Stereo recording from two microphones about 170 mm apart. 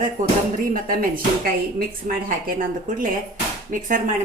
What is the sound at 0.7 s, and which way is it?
A woman's voice, 55° right (ahead or behind).